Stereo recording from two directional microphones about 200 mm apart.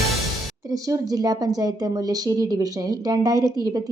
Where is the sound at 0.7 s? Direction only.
20° right (ahead or behind).